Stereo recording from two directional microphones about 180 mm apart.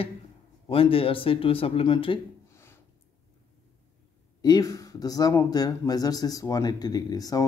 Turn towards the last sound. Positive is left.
turn(degrees=20)  # may be behind; listen again after turning